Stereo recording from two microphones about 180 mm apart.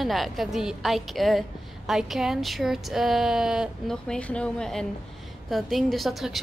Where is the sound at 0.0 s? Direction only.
Centre (ahead or behind).